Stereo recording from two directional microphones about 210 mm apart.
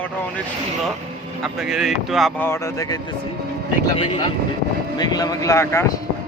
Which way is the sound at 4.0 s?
25° left (ahead or behind).